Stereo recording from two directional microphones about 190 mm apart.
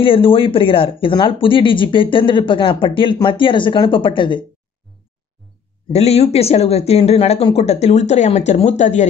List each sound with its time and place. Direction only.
0.0 s speech: 30° left (ahead or behind)
5.9 s speech: 35° left (ahead or behind)